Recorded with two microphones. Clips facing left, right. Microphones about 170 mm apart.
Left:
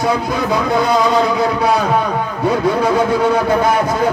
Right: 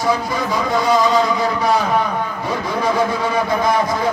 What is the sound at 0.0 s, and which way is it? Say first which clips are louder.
A man's voice: left 2 dB; 65° left (ahead or behind).